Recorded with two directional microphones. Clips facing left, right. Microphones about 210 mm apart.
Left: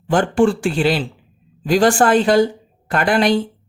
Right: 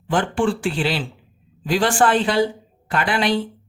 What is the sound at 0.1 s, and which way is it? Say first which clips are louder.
Speech: left 5 dB; 45° left (ahead or behind).